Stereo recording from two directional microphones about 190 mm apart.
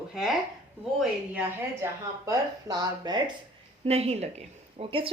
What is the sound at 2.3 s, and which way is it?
Speech, 20° right (ahead or behind).